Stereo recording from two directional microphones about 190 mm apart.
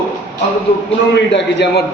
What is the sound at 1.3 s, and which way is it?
Speech, 65° left (ahead or behind).